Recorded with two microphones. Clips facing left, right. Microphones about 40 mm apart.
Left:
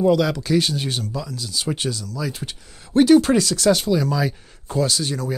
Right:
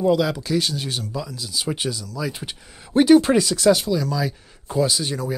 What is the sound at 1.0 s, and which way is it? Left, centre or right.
Speech, centre.